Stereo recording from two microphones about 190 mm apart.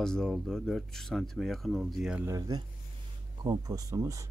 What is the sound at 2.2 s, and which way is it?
Speech, 20° right (ahead or behind).